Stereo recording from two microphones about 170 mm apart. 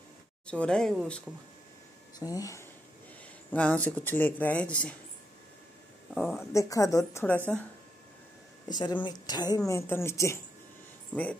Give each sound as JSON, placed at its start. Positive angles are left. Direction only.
{"t": 0.5, "sound": "speech", "side_deg": 5}
{"t": 2.1, "sound": "speech", "side_deg": 20}
{"t": 6.1, "sound": "speech", "side_deg": 0}
{"t": 6.5, "sound": "speech", "side_deg": 20}
{"t": 8.6, "sound": "speech", "side_deg": 25}